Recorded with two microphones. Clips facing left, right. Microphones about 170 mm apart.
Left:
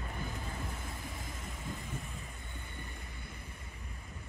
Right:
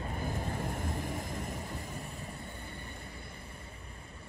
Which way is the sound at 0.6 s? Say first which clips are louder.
Right 7 dB; 55° right (ahead or behind).